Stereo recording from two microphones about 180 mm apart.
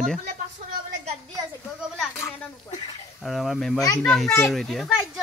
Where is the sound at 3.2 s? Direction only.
Centre (ahead or behind).